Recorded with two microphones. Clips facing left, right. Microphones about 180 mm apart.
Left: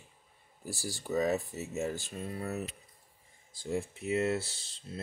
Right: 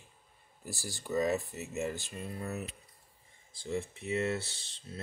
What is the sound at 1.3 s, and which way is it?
Speech, 5° left (ahead or behind).